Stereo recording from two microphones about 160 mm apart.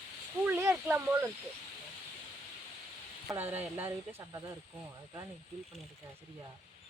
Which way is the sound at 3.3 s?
10° right (ahead or behind).